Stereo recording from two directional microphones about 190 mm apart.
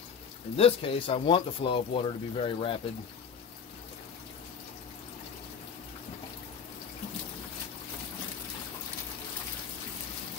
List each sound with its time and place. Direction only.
0.6 s speech: 30° left (ahead or behind)